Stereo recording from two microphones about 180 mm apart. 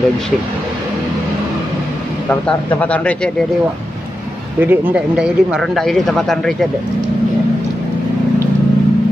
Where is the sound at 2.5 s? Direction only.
10° left (ahead or behind).